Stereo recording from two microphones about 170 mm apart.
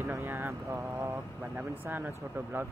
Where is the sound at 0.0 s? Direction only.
15° right (ahead or behind).